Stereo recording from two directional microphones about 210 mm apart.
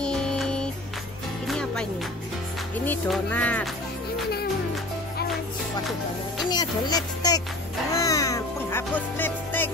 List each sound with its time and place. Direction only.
0.0 s music: 5° left (ahead or behind)
2.8 s speech: 10° left (ahead or behind)
6.5 s speech: 20° left (ahead or behind)
7.9 s music: 15° left (ahead or behind)